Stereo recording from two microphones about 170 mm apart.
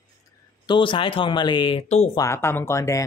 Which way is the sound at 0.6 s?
30° left (ahead or behind).